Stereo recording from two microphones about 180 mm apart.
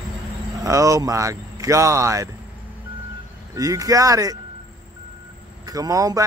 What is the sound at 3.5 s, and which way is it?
Speech, 20° right (ahead or behind).